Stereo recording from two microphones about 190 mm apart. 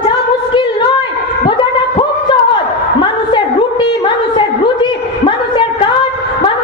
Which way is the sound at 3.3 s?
25° left (ahead or behind).